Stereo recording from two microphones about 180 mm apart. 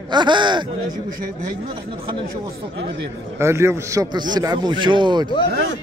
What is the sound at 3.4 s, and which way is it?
A man's voice, 15° right (ahead or behind).